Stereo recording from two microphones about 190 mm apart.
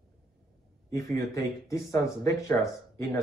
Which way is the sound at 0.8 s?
15° left (ahead or behind).